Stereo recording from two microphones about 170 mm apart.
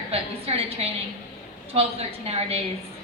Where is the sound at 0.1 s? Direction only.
35° right (ahead or behind).